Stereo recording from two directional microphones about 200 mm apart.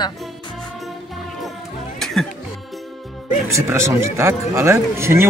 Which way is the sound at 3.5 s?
15° right (ahead or behind).